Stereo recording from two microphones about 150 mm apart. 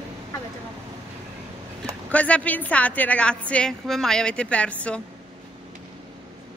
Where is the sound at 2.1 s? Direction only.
10° left (ahead or behind).